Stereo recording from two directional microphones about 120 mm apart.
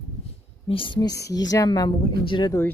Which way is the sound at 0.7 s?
45° left (ahead or behind).